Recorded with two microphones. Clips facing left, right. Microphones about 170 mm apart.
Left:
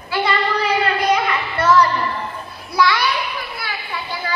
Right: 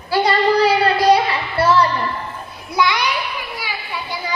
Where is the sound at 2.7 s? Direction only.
20° right (ahead or behind).